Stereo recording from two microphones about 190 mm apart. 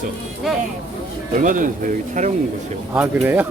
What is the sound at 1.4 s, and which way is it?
Speech, 45° right (ahead or behind).